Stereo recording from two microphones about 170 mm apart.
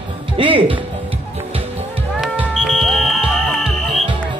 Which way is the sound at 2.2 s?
Centre (ahead or behind).